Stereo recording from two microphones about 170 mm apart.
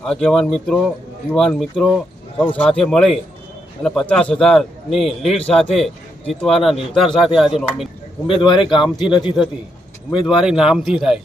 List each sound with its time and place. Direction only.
0.0 s a man's voice: 5° left (ahead or behind)
8.3 s a man's voice: 30° left (ahead or behind)
10.1 s a man's voice: 5° right (ahead or behind)